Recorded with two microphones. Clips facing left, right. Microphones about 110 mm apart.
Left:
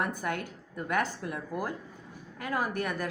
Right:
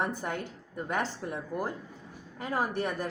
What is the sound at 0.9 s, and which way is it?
A woman's voice, 25° right (ahead or behind).